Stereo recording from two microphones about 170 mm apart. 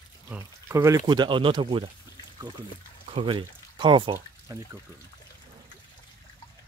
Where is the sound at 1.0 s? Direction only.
30° right (ahead or behind).